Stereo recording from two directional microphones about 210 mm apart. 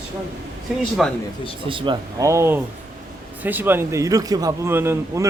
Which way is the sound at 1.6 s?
25° right (ahead or behind).